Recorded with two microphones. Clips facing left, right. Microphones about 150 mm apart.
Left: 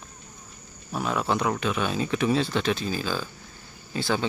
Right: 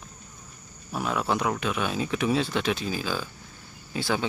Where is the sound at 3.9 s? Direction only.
5° right (ahead or behind).